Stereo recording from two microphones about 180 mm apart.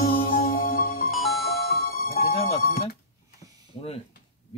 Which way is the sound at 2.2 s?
35° left (ahead or behind).